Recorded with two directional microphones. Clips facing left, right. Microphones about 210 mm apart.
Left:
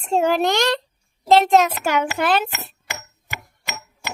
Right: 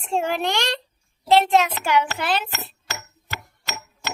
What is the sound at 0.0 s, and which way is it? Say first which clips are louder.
A child's voice: left 5 dB; 40° left (ahead or behind).